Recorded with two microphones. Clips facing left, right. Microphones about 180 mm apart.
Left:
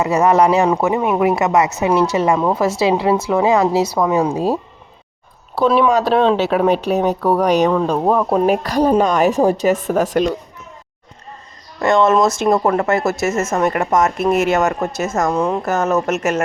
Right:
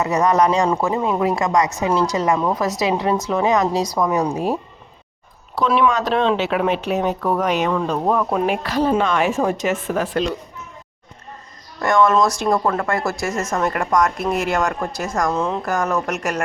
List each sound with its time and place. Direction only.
0.0 s speech: 25° left (ahead or behind)
5.5 s speech: 35° left (ahead or behind)
11.8 s speech: 25° left (ahead or behind)
15.3 s speech: 10° left (ahead or behind)